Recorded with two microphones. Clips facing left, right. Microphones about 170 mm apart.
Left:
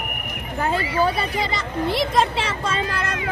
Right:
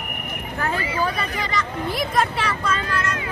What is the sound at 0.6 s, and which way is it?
A woman's voice, 30° left (ahead or behind).